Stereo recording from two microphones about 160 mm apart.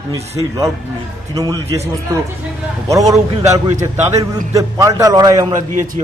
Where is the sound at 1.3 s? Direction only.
20° right (ahead or behind).